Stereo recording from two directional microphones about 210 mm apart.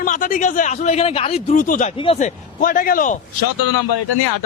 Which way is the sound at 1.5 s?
40° left (ahead or behind).